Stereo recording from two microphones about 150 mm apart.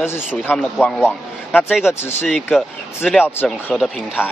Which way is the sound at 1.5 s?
10° left (ahead or behind).